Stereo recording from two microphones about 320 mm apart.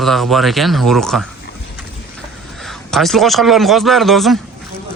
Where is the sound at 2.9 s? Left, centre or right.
Centre.